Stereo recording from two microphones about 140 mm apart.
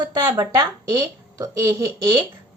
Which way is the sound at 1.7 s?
25° right (ahead or behind).